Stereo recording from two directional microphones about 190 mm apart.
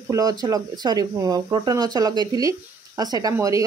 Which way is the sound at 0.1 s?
20° right (ahead or behind).